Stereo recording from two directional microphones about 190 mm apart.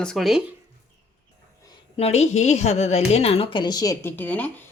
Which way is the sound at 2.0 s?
35° left (ahead or behind).